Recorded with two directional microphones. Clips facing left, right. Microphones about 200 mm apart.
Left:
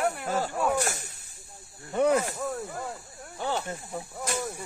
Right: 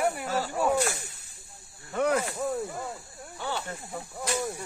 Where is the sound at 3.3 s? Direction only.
40° left (ahead or behind).